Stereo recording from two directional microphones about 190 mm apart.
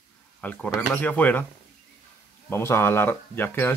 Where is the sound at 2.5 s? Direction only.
15° left (ahead or behind).